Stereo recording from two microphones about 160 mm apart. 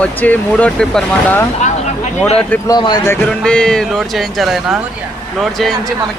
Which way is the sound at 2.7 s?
25° left (ahead or behind).